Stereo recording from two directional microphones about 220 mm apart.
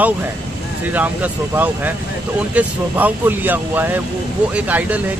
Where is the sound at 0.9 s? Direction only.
10° right (ahead or behind).